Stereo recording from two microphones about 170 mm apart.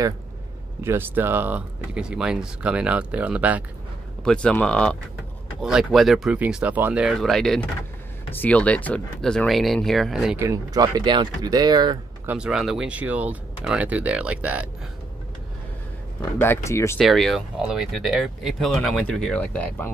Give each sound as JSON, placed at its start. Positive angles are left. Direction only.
{"t": 0.8, "sound": "speech", "side_deg": -10}
{"t": 4.2, "sound": "speech", "side_deg": 5}
{"t": 10.4, "sound": "speech", "side_deg": -20}
{"t": 12.3, "sound": "speech", "side_deg": -5}
{"t": 16.3, "sound": "speech", "side_deg": 15}
{"t": 17.0, "sound": "speech", "side_deg": 0}